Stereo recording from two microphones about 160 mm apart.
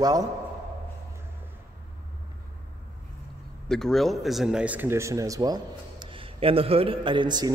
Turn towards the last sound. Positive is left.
turn(degrees=-25)  # may be behind; listen again after turning